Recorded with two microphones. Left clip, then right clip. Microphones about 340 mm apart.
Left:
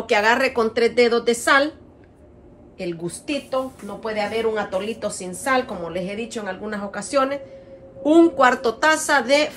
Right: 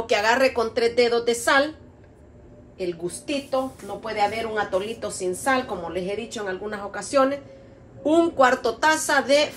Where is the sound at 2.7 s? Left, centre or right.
Left.